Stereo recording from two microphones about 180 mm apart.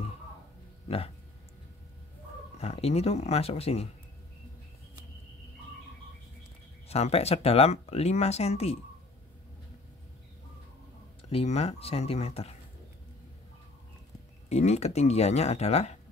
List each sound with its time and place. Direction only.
0.8 s a sound: 35° left (ahead or behind)
2.6 s speech: 35° left (ahead or behind)
6.9 s speech: 35° left (ahead or behind)
11.2 s speech: 35° left (ahead or behind)
14.5 s speech: 35° left (ahead or behind)